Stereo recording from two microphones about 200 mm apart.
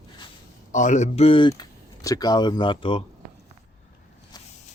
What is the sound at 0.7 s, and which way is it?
Speech, 40° left (ahead or behind).